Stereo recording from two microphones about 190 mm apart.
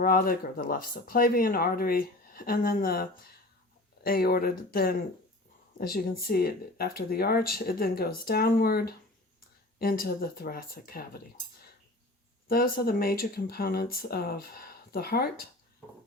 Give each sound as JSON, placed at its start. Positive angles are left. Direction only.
{"t": 0.0, "sound": "speech", "side_deg": 50}
{"t": 12.5, "sound": "speech", "side_deg": 50}